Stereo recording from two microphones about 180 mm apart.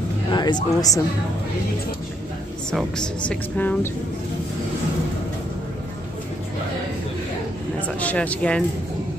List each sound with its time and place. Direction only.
0.3 s a sound: 25° left (ahead or behind)
0.7 s a woman's voice: 20° left (ahead or behind)
3.3 s speech: 10° left (ahead or behind)
8.0 s speech: 10° left (ahead or behind)